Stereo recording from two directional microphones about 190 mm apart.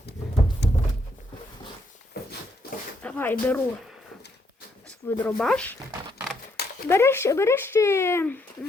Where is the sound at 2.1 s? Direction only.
55° left (ahead or behind).